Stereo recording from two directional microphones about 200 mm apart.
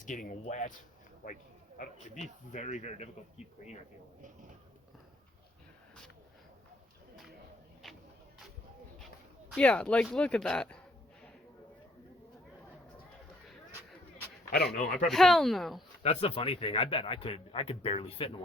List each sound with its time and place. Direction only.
0.0 s speech: 40° left (ahead or behind)
1.8 s speech: 35° left (ahead or behind)
9.6 s speech: 5° left (ahead or behind)
14.5 s speech: 55° left (ahead or behind)
14.9 s speech: centre (ahead or behind)
16.0 s speech: 30° left (ahead or behind)